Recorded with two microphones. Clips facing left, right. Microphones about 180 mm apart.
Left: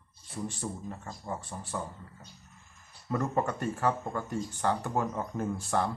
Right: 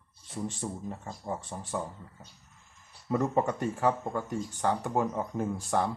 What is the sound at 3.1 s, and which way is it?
Speech, 15° right (ahead or behind).